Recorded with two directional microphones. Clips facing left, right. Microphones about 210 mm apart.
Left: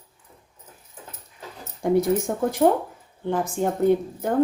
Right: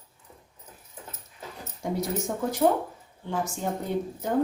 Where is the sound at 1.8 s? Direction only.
55° left (ahead or behind).